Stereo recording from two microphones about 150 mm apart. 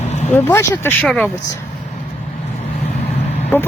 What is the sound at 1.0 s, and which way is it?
Speech, 5° left (ahead or behind).